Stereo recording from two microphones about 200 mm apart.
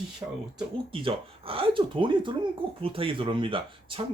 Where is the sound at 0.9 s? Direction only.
25° right (ahead or behind).